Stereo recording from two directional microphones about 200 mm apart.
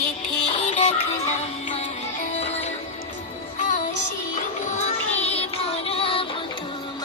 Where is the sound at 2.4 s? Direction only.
35° left (ahead or behind).